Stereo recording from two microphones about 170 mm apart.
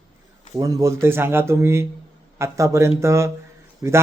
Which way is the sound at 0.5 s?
20° right (ahead or behind).